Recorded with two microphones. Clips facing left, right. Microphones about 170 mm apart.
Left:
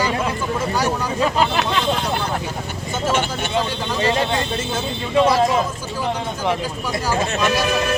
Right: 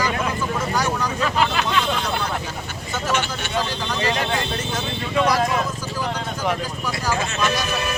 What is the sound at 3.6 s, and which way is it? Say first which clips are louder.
Speech: left 2 dB; 30° left (ahead or behind).